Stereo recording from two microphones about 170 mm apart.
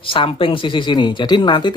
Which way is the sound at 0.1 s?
30° left (ahead or behind).